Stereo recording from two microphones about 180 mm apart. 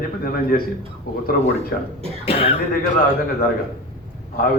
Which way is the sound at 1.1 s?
55° left (ahead or behind).